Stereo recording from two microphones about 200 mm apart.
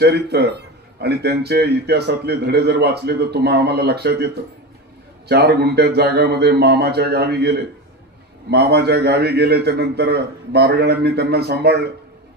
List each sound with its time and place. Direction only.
0.0 s speech: 55° right (ahead or behind)
5.3 s speech: 55° right (ahead or behind)